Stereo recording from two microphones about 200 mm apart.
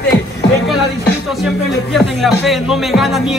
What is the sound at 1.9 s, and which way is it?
Speech, centre (ahead or behind).